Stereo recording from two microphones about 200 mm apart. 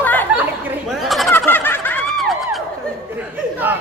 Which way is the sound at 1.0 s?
Centre (ahead or behind).